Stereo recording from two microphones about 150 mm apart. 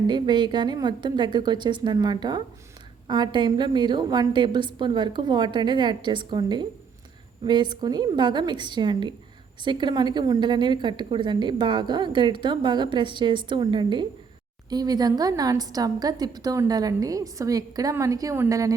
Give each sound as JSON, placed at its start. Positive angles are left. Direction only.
{"t": 0.1, "sound": "a woman's voice", "side_deg": -30}